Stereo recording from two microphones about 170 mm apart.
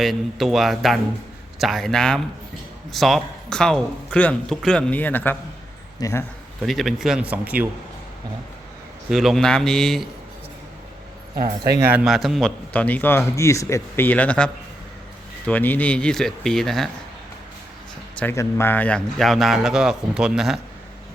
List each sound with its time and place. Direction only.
0.0 s a man's voice: centre (ahead or behind); by 6.2 s 20° left (ahead or behind)
6.6 s a man's voice: centre (ahead or behind)
9.0 s a man's voice: centre (ahead or behind)
11.4 s a man's voice: 25° right (ahead or behind)
11.9 s a man's voice: 5° right (ahead or behind)
18.2 s a man's voice: 15° left (ahead or behind); by 20.6 s centre (ahead or behind)